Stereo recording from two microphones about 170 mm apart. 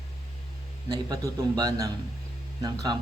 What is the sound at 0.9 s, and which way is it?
A man's voice, 20° right (ahead or behind).